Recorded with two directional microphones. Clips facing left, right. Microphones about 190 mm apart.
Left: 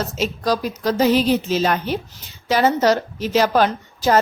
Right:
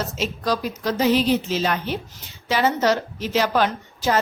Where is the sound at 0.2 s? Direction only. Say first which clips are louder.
Left 3 dB; 40° left (ahead or behind).